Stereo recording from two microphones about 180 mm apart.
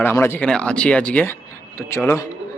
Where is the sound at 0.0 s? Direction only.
10° left (ahead or behind).